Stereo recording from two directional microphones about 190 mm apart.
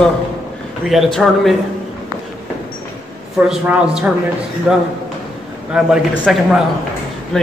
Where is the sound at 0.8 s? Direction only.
Centre (ahead or behind).